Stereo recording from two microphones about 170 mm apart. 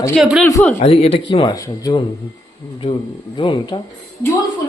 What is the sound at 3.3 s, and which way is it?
Speech, 25° left (ahead or behind).